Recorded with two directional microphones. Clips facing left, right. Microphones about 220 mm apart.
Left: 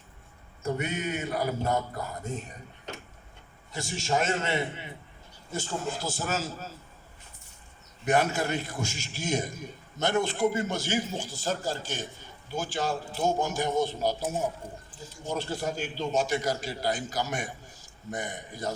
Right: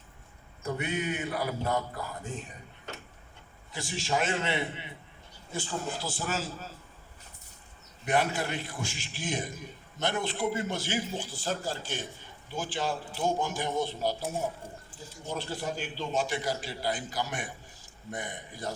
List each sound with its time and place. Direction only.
0.8 s a man's voice: 45° left (ahead or behind)
3.7 s a man's voice: 45° left (ahead or behind)
8.0 s a man's voice: 45° left (ahead or behind)
15.3 s a man's voice: 45° left (ahead or behind)